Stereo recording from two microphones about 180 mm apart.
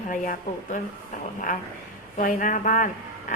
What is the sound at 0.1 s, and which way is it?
Speech, 50° left (ahead or behind).